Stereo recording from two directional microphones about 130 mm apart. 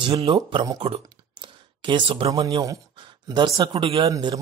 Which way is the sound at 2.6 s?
30° right (ahead or behind).